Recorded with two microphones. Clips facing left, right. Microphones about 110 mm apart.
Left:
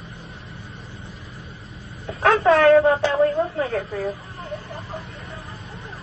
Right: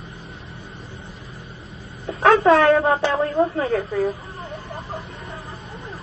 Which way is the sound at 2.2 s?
25° right (ahead or behind).